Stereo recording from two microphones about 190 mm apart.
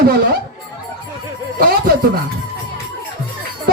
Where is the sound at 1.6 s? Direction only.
50° right (ahead or behind).